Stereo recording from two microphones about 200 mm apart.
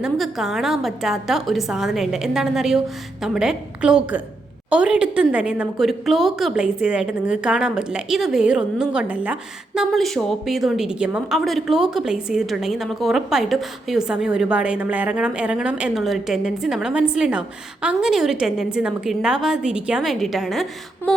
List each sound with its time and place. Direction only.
0.0 s a woman's voice: centre (ahead or behind)